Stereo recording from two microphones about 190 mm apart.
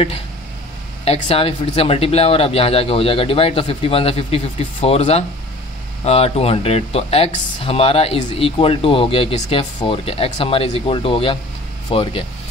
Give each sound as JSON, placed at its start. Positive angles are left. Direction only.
{"t": 1.0, "sound": "speech", "side_deg": 30}